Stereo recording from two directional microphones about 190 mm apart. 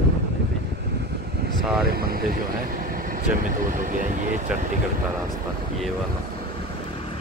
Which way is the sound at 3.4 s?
45° right (ahead or behind).